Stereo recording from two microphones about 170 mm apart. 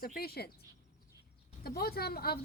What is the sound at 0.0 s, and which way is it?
Speech, 65° left (ahead or behind).